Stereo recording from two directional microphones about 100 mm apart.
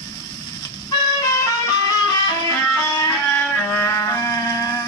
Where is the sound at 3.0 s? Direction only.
25° left (ahead or behind).